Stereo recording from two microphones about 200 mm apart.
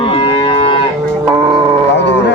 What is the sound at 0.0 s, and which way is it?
Moo, 25° left (ahead or behind).